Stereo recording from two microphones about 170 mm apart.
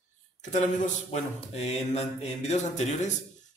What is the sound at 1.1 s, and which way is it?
Mantra, 40° left (ahead or behind).